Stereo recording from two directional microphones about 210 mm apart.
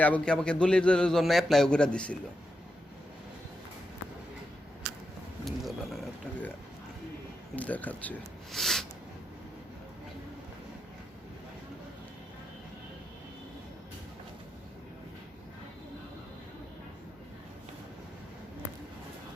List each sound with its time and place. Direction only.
0.0 s a man's voice: 5° left (ahead or behind)
5.5 s speech: centre (ahead or behind)
7.5 s speech: 5° left (ahead or behind)